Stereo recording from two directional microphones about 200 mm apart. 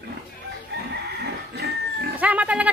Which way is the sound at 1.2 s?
55° right (ahead or behind).